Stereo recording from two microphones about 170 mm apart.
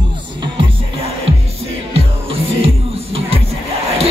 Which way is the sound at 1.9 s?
35° right (ahead or behind).